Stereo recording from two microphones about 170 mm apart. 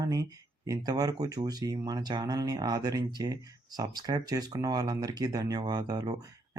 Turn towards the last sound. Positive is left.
turn(degrees=-25)  # may be behind; listen again after turning